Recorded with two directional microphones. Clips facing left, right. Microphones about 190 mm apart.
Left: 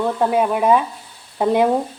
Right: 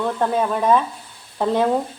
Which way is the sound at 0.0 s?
10° left (ahead or behind).